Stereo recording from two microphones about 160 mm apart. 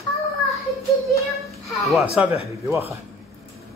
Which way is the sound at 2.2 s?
5° right (ahead or behind).